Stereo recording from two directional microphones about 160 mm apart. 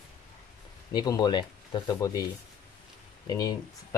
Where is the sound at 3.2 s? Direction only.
25° left (ahead or behind).